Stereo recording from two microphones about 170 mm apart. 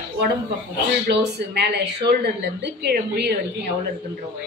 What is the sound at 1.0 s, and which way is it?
Speech, 75° right (ahead or behind).